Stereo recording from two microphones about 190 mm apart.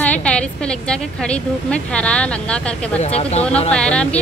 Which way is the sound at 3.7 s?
5° left (ahead or behind).